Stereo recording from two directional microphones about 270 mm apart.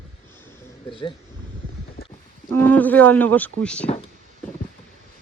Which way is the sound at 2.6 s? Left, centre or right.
Centre.